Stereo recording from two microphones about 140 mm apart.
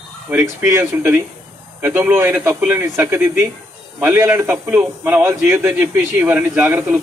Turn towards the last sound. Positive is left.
turn(degrees=-15)  # may be behind; listen again after turning